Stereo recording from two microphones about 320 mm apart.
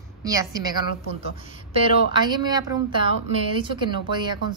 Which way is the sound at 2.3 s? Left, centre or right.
Centre.